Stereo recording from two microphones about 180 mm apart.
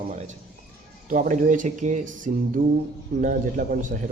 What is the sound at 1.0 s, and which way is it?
Speech, 45° right (ahead or behind).